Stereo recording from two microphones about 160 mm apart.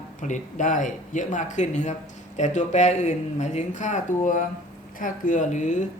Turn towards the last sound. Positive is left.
turn(degrees=50)  # may be behind; listen again after turning